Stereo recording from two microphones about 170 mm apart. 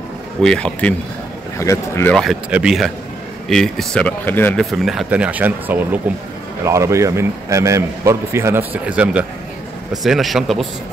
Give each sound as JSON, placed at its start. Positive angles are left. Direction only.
{"t": 0.4, "sound": "speech", "side_deg": 5}
{"t": 2.1, "sound": "a man's voice", "side_deg": 0}